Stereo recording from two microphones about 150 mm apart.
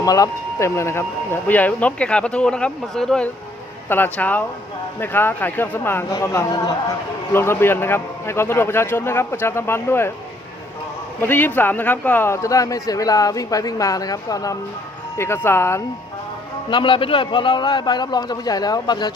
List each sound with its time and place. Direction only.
0.0 s speech: 25° left (ahead or behind); by 3.2 s centre (ahead or behind)
3.8 s speech: 15° left (ahead or behind)
11.2 s speech: 15° left (ahead or behind)
16.6 s speech: 35° left (ahead or behind)